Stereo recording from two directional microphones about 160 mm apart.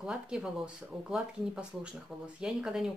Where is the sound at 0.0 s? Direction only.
5° right (ahead or behind).